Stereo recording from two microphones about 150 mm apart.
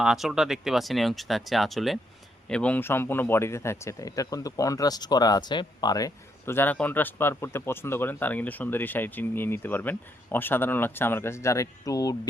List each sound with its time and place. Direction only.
0.0 s speech: 5° right (ahead or behind); by 12.1 s 20° left (ahead or behind)